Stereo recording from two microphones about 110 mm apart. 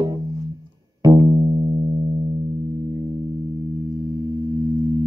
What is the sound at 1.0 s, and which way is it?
Music, 35° right (ahead or behind).